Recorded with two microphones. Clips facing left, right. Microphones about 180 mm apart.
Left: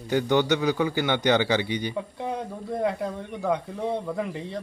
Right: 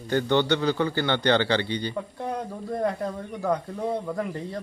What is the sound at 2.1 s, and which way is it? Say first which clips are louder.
Speech: even; 5° left (ahead or behind).